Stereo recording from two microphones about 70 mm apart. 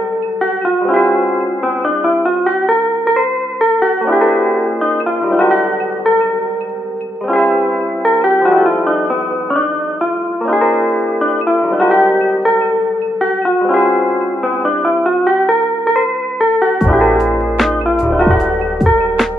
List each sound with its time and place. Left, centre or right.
4.1 s music: centre
8.5 s music: centre
11.4 s music: left